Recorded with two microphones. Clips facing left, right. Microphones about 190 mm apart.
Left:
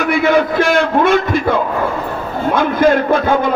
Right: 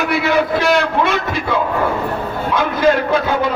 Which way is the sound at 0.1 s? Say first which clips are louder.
Left 4 dB; 50° left (ahead or behind).